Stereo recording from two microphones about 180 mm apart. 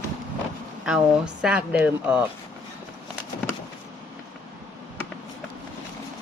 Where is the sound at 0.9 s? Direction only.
5° right (ahead or behind).